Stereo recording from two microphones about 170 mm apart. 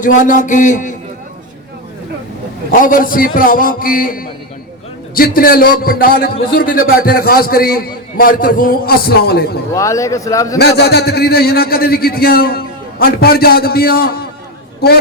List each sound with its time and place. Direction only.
0.0 s a man's voice: 50° left (ahead or behind)
2.7 s a man's voice: 55° left (ahead or behind)
9.7 s speech: 20° left (ahead or behind)
10.6 s a man's voice: 75° left (ahead or behind)